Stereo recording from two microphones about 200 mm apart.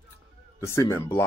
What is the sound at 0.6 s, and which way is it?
Speech, 15° left (ahead or behind).